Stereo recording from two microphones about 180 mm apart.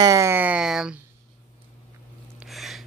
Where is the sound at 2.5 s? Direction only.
Centre (ahead or behind).